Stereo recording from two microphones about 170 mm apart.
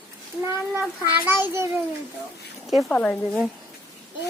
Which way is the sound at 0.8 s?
10° right (ahead or behind).